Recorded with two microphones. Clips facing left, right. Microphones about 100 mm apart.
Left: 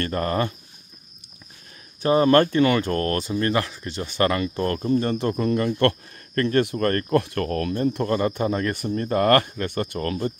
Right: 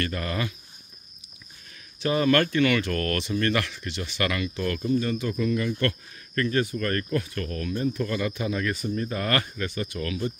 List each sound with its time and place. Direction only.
0.0 s speech: 40° left (ahead or behind)
2.0 s speech: 35° left (ahead or behind); by 6.8 s 60° left (ahead or behind)
6.8 s speech: 45° left (ahead or behind)
8.7 s speech: 60° left (ahead or behind)